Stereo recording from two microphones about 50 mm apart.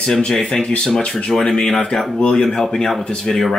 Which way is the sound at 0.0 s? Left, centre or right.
Centre.